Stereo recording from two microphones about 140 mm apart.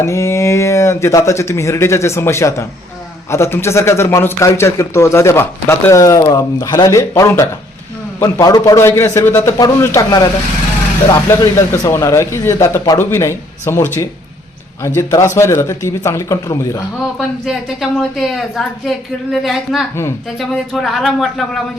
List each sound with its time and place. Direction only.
0.0 s a man's voice: 20° left (ahead or behind)
11.3 s a man's voice: 25° left (ahead or behind)
17.2 s a woman's voice: centre (ahead or behind)